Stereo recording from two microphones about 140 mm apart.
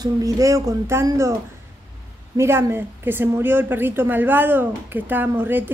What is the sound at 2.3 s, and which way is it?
A woman's voice, 20° right (ahead or behind).